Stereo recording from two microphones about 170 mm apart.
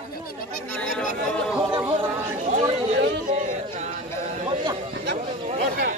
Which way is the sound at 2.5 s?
40° right (ahead or behind).